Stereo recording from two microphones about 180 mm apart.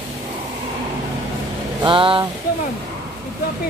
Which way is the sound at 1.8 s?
30° right (ahead or behind).